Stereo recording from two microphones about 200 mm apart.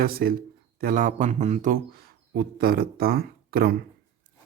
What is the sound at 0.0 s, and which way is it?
Speech, 50° right (ahead or behind).